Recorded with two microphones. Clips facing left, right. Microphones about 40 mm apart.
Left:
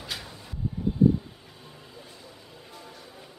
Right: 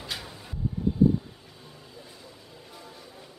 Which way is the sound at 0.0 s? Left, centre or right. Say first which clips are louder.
Even; centre.